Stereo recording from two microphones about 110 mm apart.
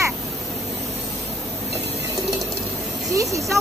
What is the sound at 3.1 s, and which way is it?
Speech, 30° right (ahead or behind).